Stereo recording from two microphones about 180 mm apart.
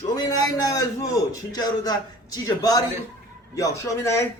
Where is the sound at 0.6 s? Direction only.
20° left (ahead or behind).